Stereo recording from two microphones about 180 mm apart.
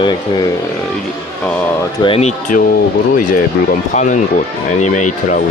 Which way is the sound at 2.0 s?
35° left (ahead or behind).